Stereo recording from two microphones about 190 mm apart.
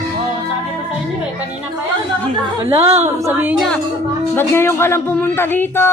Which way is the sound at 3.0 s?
10° right (ahead or behind).